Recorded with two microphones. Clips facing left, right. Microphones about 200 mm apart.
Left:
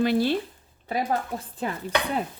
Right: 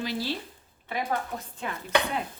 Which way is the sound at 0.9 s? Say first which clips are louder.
Left 4 dB; 40° left (ahead or behind).